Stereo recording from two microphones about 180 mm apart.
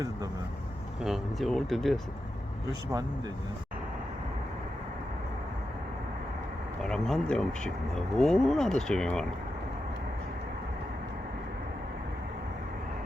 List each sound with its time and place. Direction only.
1.0 s speech: centre (ahead or behind)
6.8 s speech: 5° left (ahead or behind)